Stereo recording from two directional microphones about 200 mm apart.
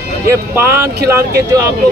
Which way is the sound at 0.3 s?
15° right (ahead or behind).